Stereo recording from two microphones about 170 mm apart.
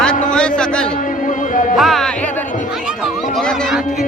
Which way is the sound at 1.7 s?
Centre (ahead or behind).